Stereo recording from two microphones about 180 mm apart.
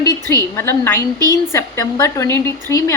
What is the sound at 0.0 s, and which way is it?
A woman's voice, 20° left (ahead or behind).